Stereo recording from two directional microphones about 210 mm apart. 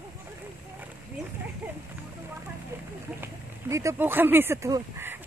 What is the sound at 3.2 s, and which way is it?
Speech, 15° right (ahead or behind).